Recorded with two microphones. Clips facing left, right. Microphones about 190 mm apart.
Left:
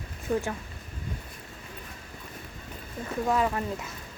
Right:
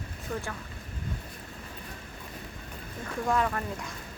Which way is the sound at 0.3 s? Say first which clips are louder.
Left 8 dB; 30° left (ahead or behind).